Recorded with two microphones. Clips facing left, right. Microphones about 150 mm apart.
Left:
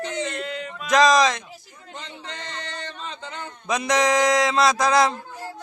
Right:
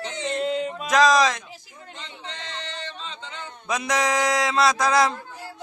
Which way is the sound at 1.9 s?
45° left (ahead or behind).